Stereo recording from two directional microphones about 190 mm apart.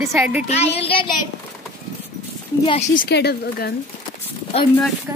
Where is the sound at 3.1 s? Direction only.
55° left (ahead or behind).